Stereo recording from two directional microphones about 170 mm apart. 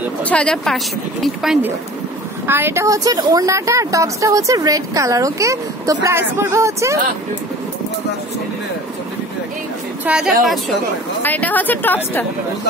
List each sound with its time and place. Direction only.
0.2 s speech: 5° left (ahead or behind)
2.4 s speech: 15° right (ahead or behind)
10.0 s speech: 5° right (ahead or behind); by 12.3 s 10° left (ahead or behind)